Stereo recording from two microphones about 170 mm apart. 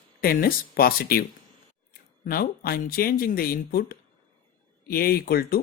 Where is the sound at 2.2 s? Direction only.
60° left (ahead or behind).